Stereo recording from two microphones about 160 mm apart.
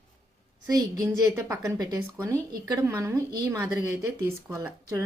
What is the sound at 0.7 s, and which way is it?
Speech, 20° right (ahead or behind).